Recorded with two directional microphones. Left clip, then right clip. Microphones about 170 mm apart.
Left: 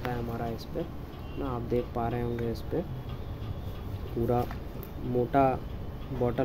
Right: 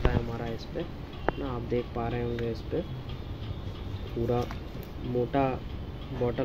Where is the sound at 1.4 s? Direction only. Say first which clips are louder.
Left 1 dB; 10° left (ahead or behind).